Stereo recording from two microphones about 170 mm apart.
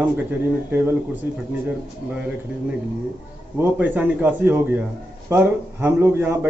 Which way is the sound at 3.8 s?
10° right (ahead or behind).